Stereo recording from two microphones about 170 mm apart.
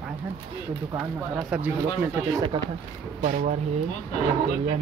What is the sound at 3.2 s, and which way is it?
Speech, 50° right (ahead or behind).